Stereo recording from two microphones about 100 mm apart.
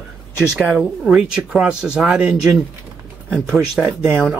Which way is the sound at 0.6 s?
5° right (ahead or behind).